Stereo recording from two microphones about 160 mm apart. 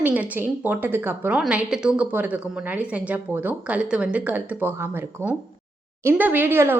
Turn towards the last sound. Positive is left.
turn(degrees=-15)  # may be behind; listen again after turning